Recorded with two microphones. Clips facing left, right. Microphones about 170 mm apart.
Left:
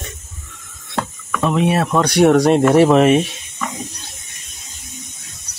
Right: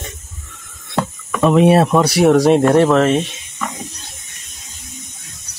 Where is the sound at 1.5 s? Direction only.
45° right (ahead or behind).